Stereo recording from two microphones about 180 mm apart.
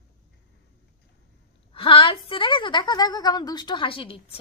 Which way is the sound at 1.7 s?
30° left (ahead or behind).